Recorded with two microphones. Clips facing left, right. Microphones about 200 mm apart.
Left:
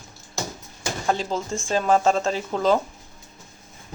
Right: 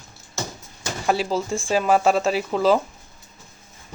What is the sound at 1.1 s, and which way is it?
Speech, 10° right (ahead or behind).